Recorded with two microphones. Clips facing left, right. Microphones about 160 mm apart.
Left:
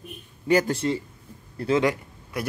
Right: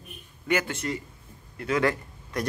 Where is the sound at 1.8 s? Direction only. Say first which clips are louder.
Left 1 dB; 10° left (ahead or behind).